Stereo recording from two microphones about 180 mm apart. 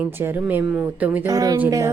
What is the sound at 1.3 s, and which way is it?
Speech, 20° right (ahead or behind).